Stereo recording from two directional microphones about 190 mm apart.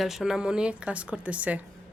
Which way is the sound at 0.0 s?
Centre (ahead or behind).